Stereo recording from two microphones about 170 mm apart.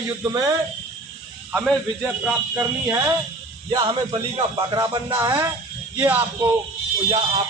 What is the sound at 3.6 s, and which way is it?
Speech, 30° right (ahead or behind).